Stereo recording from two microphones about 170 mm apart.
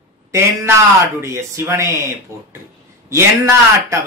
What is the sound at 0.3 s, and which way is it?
Speech, 15° right (ahead or behind).